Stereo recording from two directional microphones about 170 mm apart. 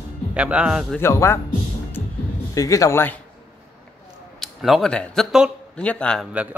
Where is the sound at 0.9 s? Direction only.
15° left (ahead or behind).